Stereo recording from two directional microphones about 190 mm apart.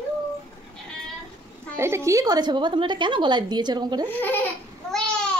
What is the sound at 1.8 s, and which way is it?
A woman's voice, 15° right (ahead or behind).